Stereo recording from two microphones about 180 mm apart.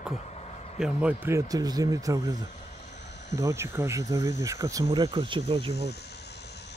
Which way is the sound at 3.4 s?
15° right (ahead or behind).